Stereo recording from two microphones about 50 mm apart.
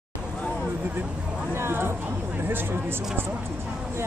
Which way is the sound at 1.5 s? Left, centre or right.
Right.